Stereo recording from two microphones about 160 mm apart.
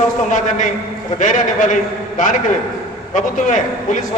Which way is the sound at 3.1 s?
55° left (ahead or behind).